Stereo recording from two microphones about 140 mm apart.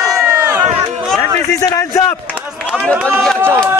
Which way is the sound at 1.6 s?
20° left (ahead or behind).